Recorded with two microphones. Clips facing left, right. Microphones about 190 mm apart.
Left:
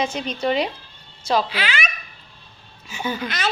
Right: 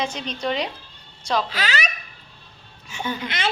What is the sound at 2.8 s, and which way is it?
Speech, 5° left (ahead or behind).